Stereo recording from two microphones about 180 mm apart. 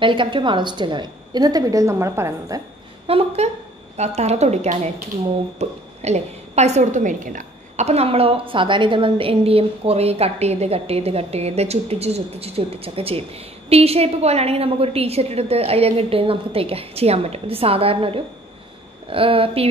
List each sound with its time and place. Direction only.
0.0 s a woman's voice: 30° right (ahead or behind)
3.1 s a woman's voice: 30° right (ahead or behind)